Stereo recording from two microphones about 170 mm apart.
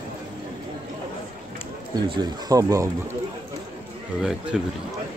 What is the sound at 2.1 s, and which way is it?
Speech, 20° right (ahead or behind).